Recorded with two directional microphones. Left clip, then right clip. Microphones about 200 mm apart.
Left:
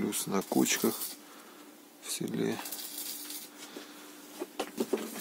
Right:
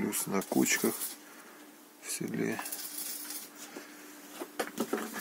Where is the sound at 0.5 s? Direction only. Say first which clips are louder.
Even; 20° left (ahead or behind).